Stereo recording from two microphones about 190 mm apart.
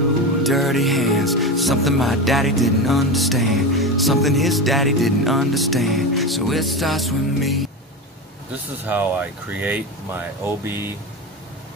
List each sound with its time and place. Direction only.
0.4 s music: centre (ahead or behind)
8.8 s speech: 10° right (ahead or behind)